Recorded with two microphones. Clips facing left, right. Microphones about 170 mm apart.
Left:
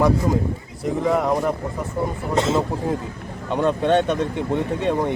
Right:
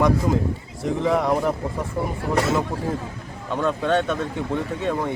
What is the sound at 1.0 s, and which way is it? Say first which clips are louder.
Speech: left 1 dB; centre (ahead or behind).